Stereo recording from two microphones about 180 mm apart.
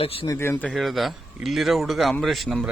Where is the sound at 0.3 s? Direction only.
15° left (ahead or behind).